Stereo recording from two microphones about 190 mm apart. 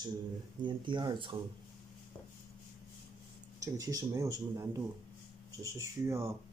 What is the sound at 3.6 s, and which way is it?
Speech, 15° right (ahead or behind).